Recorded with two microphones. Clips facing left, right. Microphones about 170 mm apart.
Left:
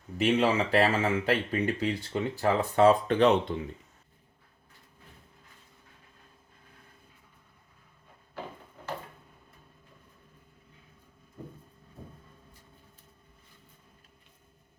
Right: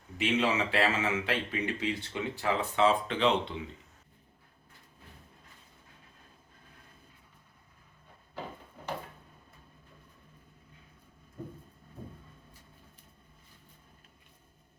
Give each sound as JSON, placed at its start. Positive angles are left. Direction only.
{"t": 0.2, "sound": "speech", "side_deg": 40}